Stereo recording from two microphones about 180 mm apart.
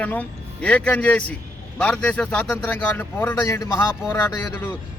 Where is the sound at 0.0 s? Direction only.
10° left (ahead or behind).